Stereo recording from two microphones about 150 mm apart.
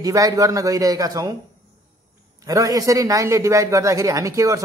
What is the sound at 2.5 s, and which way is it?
Speech, 25° right (ahead or behind).